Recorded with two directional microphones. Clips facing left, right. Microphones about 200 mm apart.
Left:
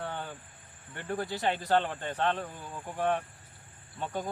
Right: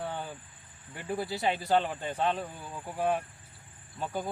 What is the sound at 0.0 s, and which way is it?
Cricket, 10° right (ahead or behind).